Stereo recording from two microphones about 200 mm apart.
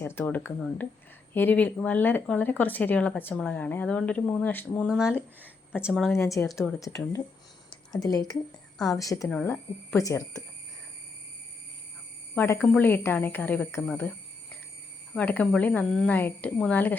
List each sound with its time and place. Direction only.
0.0 s speech: 10° left (ahead or behind)
4.9 s speech: 5° right (ahead or behind)
6.1 s speech: 15° left (ahead or behind)
6.6 s speech: centre (ahead or behind)
6.8 s speech: 15° left (ahead or behind)
12.3 s speech: 10° left (ahead or behind)